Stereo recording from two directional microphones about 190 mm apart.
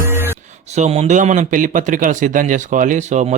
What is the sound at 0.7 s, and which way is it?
Speech, 35° right (ahead or behind).